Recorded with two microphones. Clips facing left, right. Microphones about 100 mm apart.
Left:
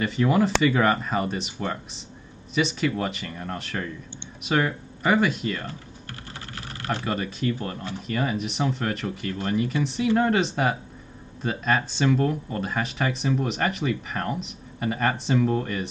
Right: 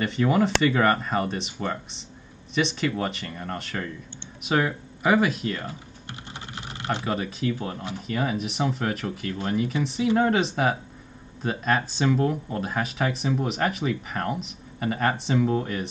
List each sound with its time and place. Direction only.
0.0 s speech: centre (ahead or behind)
6.0 s typing: 20° right (ahead or behind)
7.0 s speech: centre (ahead or behind)